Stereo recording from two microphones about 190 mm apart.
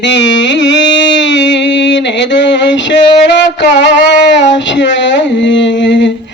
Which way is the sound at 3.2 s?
70° left (ahead or behind).